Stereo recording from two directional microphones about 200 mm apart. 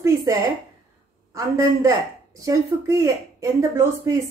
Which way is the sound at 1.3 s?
15° right (ahead or behind).